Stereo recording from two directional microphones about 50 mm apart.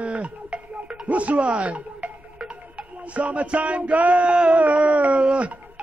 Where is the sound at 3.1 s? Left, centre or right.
Right.